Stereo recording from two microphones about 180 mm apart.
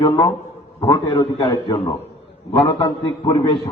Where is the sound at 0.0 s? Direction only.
25° left (ahead or behind).